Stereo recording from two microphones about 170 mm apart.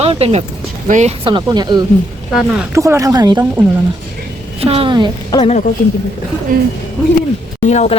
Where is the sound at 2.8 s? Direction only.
20° right (ahead or behind).